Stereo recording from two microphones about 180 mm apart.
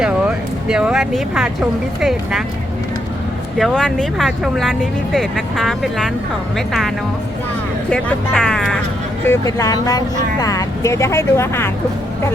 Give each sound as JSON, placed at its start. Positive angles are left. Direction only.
{"t": 0.0, "sound": "speech", "side_deg": -5}
{"t": 3.6, "sound": "speech", "side_deg": 5}
{"t": 7.9, "sound": "speech", "side_deg": 0}
{"t": 9.2, "sound": "speech", "side_deg": 15}